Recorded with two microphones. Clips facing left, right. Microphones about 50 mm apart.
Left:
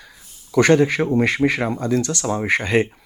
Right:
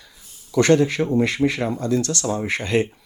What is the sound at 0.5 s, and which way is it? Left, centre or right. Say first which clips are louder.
Speech: left 2 dB; left.